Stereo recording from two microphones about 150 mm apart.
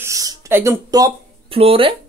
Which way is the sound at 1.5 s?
40° right (ahead or behind).